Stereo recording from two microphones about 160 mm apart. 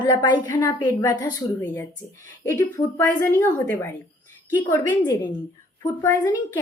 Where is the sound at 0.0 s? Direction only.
30° left (ahead or behind).